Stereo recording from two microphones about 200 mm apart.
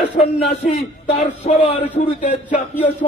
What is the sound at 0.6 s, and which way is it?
Speech, 35° left (ahead or behind).